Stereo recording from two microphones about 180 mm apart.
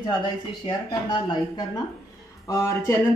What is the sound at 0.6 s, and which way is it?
Speech, 25° left (ahead or behind).